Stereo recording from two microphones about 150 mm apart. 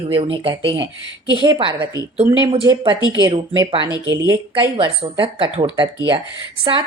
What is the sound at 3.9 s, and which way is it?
Speech, 25° left (ahead or behind).